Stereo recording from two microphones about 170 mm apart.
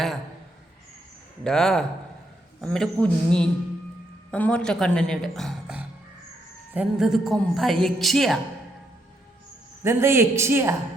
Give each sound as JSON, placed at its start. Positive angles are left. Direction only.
{"t": 1.5, "sound": "a woman's voice", "side_deg": 5}
{"t": 9.8, "sound": "a man's voice", "side_deg": -15}